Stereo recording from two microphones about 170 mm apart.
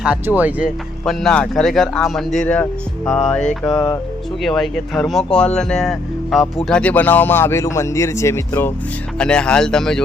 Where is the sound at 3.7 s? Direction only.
20° left (ahead or behind).